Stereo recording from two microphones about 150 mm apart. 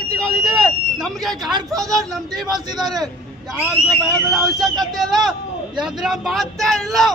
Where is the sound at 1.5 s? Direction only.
25° right (ahead or behind).